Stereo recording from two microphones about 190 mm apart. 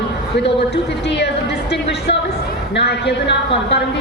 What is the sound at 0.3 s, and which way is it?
A man's voice, 65° left (ahead or behind).